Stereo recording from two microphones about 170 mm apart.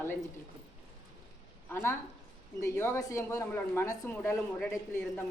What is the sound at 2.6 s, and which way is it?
Speech, 15° left (ahead or behind).